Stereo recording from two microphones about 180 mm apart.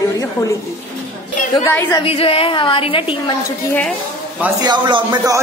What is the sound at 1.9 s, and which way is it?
A woman's voice, 30° left (ahead or behind).